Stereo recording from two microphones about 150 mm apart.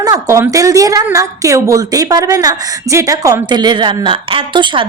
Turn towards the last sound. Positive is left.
turn(degrees=-35)  # may be behind; listen again after turning